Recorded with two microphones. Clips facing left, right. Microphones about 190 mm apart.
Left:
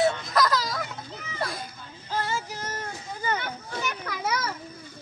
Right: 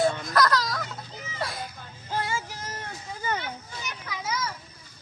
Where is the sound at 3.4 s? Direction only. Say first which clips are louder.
Left 5 dB; 60° left (ahead or behind).